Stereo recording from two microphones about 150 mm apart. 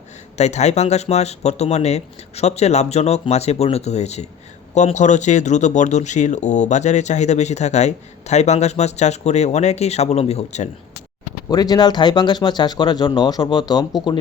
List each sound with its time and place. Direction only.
0.3 s speech: 50° left (ahead or behind)
11.4 s speech: 25° left (ahead or behind)